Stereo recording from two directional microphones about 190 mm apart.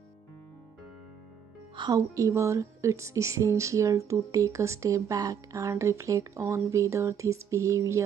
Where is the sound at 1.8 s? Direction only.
20° right (ahead or behind).